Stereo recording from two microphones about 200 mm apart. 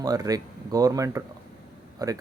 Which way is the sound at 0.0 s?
20° right (ahead or behind).